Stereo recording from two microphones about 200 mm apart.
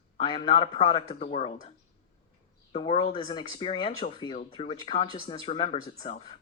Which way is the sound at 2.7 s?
25° left (ahead or behind).